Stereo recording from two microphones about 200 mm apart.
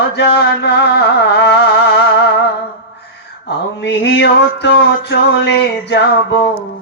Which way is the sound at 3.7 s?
60° left (ahead or behind).